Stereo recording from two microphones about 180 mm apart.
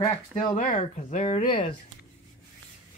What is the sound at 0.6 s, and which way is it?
Speech, 45° left (ahead or behind).